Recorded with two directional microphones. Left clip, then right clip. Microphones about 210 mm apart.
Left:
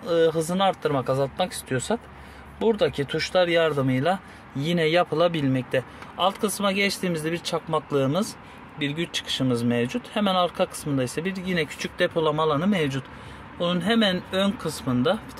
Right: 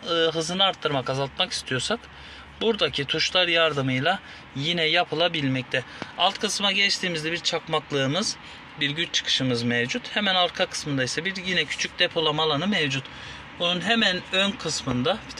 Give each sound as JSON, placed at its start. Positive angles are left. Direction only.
{"t": 0.0, "sound": "speech", "side_deg": 20}